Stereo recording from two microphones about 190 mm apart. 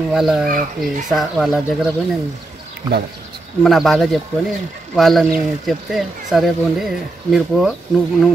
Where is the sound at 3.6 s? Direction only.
Centre (ahead or behind).